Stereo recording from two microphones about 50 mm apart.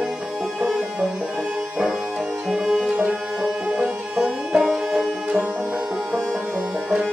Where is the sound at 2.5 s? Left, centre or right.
Centre.